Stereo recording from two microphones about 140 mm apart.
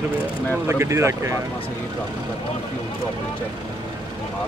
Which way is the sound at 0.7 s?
20° right (ahead or behind).